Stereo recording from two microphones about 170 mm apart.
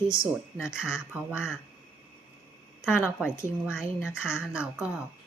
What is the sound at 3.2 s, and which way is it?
Speech, 5° right (ahead or behind).